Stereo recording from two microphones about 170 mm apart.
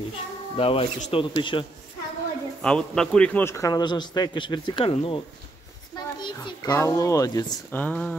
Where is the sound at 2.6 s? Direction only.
5° left (ahead or behind); by 7.6 s 20° left (ahead or behind).